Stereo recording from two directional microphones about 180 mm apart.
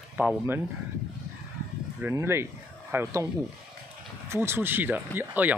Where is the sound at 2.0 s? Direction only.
15° right (ahead or behind).